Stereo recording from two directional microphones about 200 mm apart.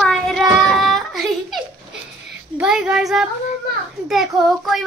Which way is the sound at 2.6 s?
5° right (ahead or behind).